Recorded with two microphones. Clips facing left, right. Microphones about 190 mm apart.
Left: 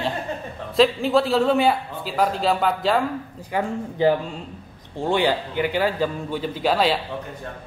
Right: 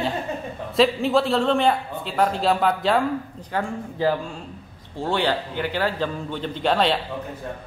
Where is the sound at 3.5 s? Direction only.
20° left (ahead or behind).